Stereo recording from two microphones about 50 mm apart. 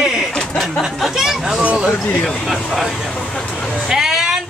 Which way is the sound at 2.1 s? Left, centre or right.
Centre.